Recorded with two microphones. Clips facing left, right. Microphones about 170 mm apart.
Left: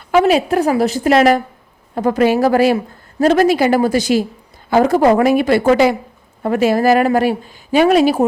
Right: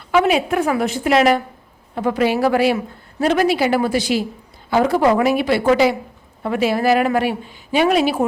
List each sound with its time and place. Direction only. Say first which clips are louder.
0.1 s a woman's voice: left 3 dB; 40° left (ahead or behind)